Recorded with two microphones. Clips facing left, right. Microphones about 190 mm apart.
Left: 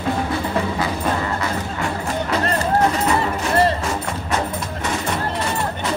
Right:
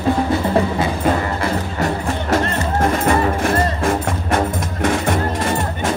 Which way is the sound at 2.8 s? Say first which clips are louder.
Right 3 dB; 50° right (ahead or behind).